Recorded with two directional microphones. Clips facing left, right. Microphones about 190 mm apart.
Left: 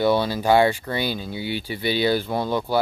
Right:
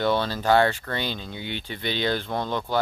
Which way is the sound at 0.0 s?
10° left (ahead or behind).